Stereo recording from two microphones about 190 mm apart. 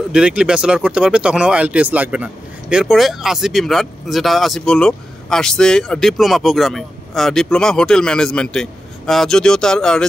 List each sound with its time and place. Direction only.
0.1 s speech: 5° right (ahead or behind)